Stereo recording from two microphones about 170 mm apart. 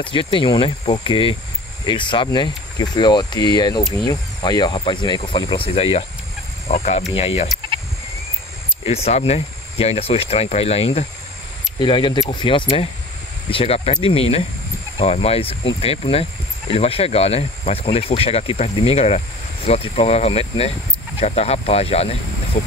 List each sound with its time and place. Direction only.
0.0 s speech: 30° left (ahead or behind)
8.8 s speech: 35° left (ahead or behind)